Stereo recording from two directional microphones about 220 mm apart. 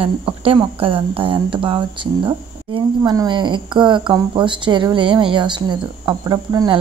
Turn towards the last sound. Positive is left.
turn(degrees=-15)  # may be behind; listen again after turning